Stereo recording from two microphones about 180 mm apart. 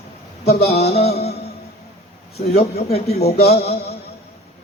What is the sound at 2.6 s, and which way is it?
A man's voice, 35° left (ahead or behind).